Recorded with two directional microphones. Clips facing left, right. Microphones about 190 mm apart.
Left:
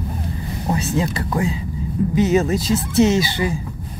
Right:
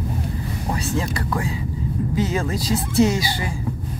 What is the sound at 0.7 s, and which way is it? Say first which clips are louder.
Speech: left 4 dB; 20° left (ahead or behind).